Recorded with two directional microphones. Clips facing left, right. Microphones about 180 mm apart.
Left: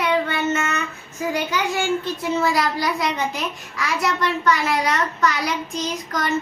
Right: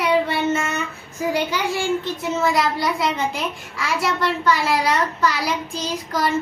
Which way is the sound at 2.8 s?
25° right (ahead or behind).